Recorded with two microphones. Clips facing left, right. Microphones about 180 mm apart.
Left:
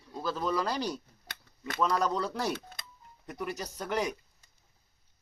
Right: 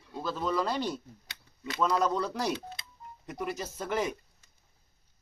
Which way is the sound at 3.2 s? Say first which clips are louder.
Right 1 dB; centre (ahead or behind).